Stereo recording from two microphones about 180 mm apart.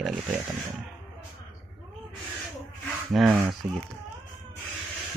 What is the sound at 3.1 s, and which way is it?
Speech, centre (ahead or behind).